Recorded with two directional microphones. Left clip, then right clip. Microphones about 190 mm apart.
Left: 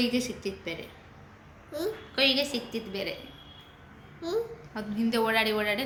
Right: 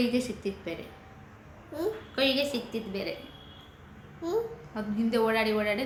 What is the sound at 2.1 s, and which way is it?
Speech, 5° right (ahead or behind).